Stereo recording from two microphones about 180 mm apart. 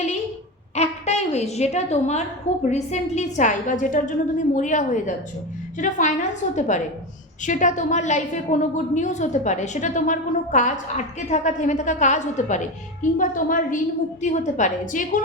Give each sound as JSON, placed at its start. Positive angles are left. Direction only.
{"t": 0.8, "sound": "a woman's voice", "side_deg": 35}